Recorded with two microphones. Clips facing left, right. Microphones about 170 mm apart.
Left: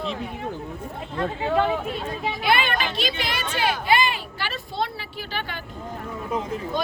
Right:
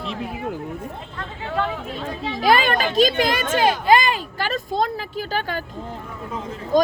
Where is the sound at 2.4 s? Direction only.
40° right (ahead or behind).